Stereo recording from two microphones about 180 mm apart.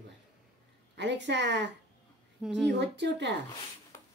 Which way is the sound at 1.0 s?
75° right (ahead or behind).